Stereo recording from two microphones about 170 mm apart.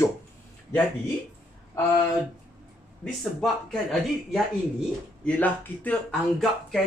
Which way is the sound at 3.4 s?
Centre (ahead or behind).